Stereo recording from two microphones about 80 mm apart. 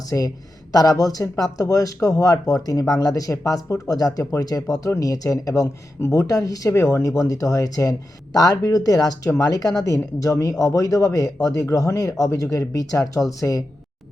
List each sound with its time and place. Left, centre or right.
0.1 s speech: left
0.7 s speech: left